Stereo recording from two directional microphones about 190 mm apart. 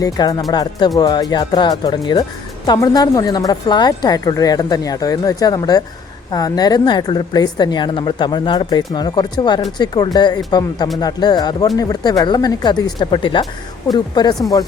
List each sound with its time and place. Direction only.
0.0 s a woman's voice: 20° left (ahead or behind)